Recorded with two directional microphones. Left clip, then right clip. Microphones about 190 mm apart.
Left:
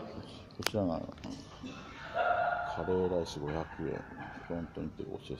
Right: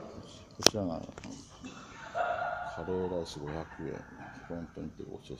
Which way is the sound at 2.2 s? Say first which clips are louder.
Left 1 dB; 55° left (ahead or behind).